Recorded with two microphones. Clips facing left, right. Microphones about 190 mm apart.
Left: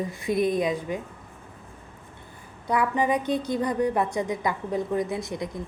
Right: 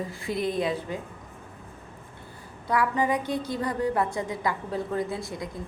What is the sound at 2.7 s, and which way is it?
A woman's voice, 20° left (ahead or behind).